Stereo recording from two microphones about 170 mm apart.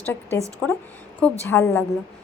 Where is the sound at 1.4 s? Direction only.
15° left (ahead or behind).